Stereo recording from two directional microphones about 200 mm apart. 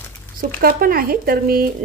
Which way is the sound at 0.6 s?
50° right (ahead or behind).